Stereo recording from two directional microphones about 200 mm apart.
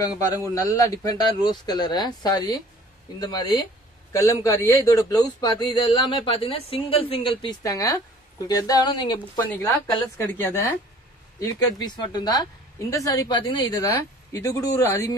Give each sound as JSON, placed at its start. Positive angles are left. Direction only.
{"t": 0.3, "sound": "a man's voice", "side_deg": 15}
{"t": 9.4, "sound": "a man's voice", "side_deg": 10}